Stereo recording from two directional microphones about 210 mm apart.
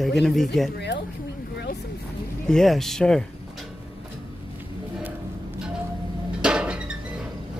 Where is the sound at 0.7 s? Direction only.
55° left (ahead or behind).